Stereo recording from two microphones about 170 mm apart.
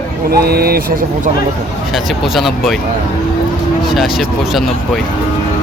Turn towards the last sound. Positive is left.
turn(degrees=0)  # may be behind; listen again after turning